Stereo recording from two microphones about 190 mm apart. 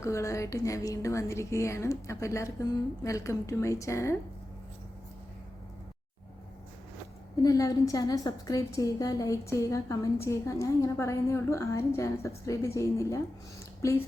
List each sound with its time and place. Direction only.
0.0 s a woman's voice: 15° left (ahead or behind)
7.4 s a woman's voice: 20° left (ahead or behind)